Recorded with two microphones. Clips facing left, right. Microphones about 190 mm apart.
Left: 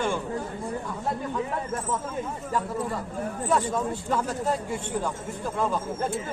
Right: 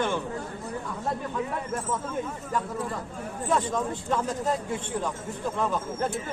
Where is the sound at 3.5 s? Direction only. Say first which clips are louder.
Left 1 dB; 10° left (ahead or behind).